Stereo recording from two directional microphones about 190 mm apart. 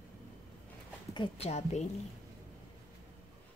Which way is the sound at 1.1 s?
30° left (ahead or behind).